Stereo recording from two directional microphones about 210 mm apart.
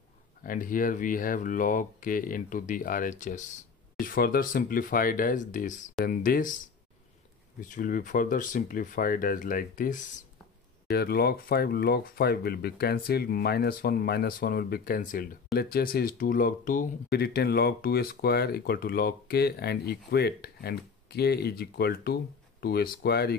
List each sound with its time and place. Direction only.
0.4 s speech: 40° left (ahead or behind)
7.6 s speech: 40° left (ahead or behind)